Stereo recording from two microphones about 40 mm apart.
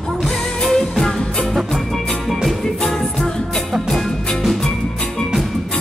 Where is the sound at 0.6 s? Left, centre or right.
Centre.